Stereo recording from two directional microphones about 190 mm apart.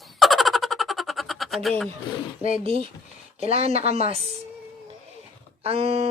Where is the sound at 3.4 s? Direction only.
30° right (ahead or behind).